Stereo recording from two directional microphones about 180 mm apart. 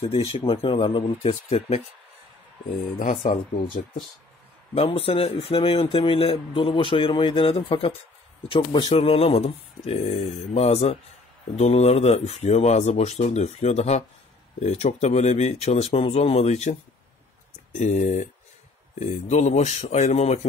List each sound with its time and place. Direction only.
0.4 s speech: 25° left (ahead or behind)
3.2 s speech: 45° left (ahead or behind)
4.7 s speech: 30° left (ahead or behind)
17.7 s speech: 40° left (ahead or behind)